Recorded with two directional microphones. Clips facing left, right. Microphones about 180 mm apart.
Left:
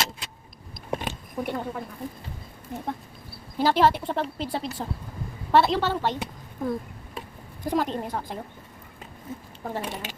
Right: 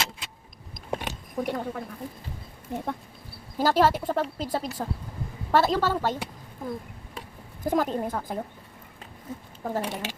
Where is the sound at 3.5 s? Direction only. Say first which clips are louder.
Left 1 dB; 40° right (ahead or behind).